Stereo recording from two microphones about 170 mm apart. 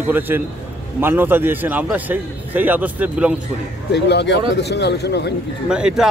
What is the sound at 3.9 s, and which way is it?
A man's voice, 85° left.